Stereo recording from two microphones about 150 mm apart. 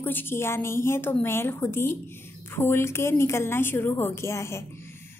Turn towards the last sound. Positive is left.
turn(degrees=20)  # may be behind; listen again after turning